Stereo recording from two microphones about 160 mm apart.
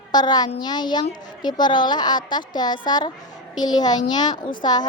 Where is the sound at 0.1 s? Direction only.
25° left (ahead or behind).